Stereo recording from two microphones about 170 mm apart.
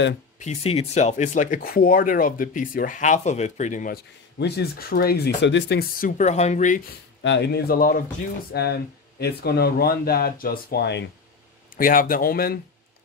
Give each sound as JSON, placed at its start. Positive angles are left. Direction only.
{"t": 0.4, "sound": "speech", "side_deg": 40}
{"t": 4.4, "sound": "speech", "side_deg": 70}
{"t": 7.2, "sound": "speech", "side_deg": 80}
{"t": 8.5, "sound": "speech", "side_deg": 70}
{"t": 11.7, "sound": "speech", "side_deg": 55}